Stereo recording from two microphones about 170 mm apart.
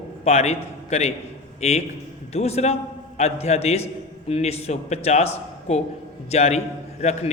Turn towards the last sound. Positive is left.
turn(degrees=40)  # may be behind; listen again after turning